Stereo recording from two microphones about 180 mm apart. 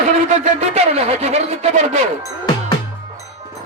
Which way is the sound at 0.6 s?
35° right (ahead or behind).